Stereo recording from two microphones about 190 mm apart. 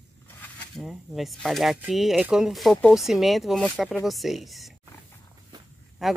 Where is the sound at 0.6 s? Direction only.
Centre (ahead or behind).